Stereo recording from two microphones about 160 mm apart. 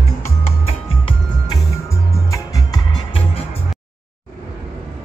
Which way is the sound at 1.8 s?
20° left (ahead or behind).